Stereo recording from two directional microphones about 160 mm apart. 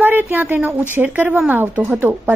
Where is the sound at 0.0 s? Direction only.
15° right (ahead or behind).